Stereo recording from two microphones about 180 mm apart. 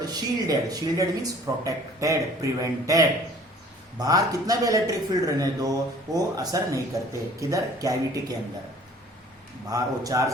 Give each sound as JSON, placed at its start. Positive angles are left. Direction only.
{"t": 0.0, "sound": "speech", "side_deg": -20}
{"t": 9.6, "sound": "speech", "side_deg": -20}